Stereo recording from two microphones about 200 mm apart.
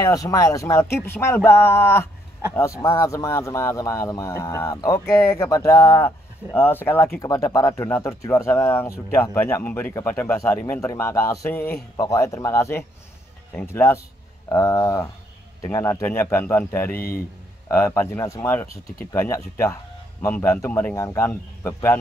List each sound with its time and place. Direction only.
0.0 s speech: 15° left (ahead or behind)